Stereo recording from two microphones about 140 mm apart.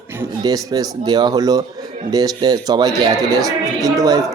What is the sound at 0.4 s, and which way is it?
Speech, 25° right (ahead or behind).